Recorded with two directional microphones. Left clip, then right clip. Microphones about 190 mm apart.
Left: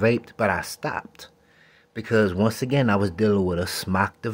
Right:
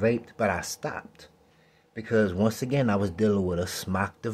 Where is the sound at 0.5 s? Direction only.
20° left (ahead or behind).